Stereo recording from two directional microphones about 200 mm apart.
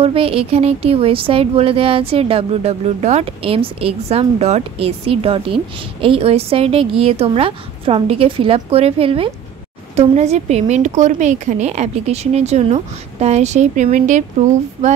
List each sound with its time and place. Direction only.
0.0 s speech: 30° right (ahead or behind)